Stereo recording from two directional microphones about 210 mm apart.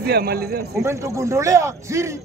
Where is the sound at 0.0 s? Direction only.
50° right (ahead or behind).